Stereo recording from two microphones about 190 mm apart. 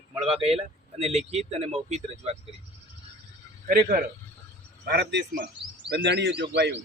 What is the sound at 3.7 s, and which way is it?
Speech, 50° right (ahead or behind).